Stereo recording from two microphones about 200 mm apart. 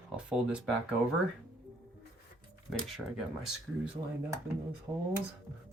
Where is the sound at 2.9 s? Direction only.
Centre (ahead or behind).